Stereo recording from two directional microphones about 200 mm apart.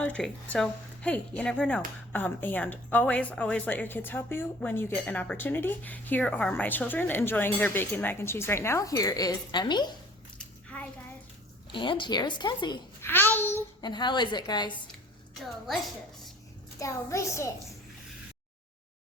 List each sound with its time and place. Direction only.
0.0 s a woman's voice: 5° left (ahead or behind); by 9.9 s 20° left (ahead or behind)
10.3 s a sound: 5° left (ahead or behind)
11.7 s a woman's voice: 25° left (ahead or behind)
13.1 s a woman's voice: 10° left (ahead or behind)
13.8 s a woman's voice: 20° left (ahead or behind)
15.6 s a woman's voice: centre (ahead or behind)
16.8 s a woman's voice: 15° left (ahead or behind)